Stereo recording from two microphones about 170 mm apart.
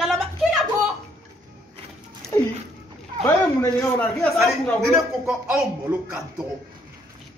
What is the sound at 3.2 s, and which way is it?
Speech, 15° left (ahead or behind).